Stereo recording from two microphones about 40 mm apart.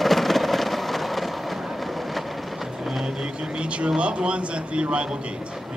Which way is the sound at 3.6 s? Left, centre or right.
Right.